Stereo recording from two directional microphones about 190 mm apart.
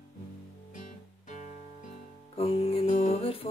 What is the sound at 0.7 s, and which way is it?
Music, 40° left (ahead or behind).